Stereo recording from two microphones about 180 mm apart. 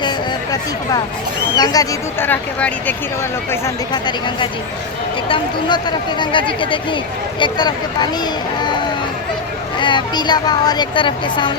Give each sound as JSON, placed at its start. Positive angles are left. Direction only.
{"t": 1.5, "sound": "speech", "side_deg": 20}
{"t": 3.5, "sound": "speech", "side_deg": 25}